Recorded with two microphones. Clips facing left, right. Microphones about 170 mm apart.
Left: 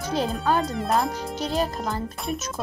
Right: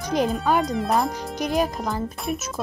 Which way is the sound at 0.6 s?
Centre (ahead or behind).